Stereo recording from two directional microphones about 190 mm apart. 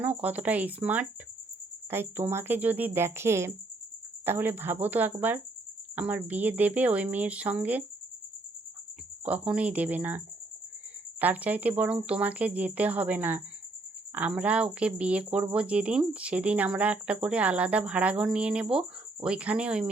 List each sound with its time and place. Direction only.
0.0 s speech: 10° right (ahead or behind)
9.2 s speech: 5° right (ahead or behind)
11.2 s speech: 10° right (ahead or behind)